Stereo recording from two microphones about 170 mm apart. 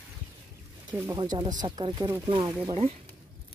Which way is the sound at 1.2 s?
25° right (ahead or behind).